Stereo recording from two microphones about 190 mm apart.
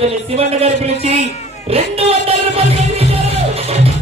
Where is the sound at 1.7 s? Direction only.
30° right (ahead or behind).